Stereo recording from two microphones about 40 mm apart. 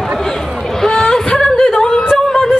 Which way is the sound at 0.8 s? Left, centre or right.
Centre.